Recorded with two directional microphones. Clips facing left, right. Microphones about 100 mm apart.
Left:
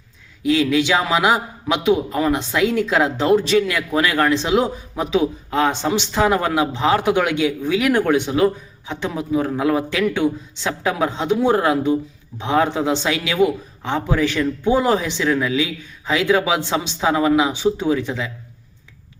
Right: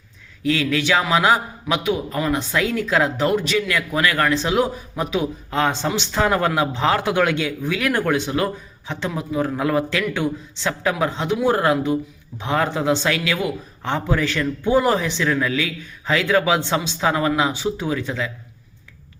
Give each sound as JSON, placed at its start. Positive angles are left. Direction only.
{"t": 0.4, "sound": "speech", "side_deg": 15}
{"t": 1.7, "sound": "speech", "side_deg": 30}